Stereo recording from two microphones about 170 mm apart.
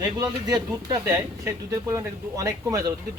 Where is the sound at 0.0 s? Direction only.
25° right (ahead or behind).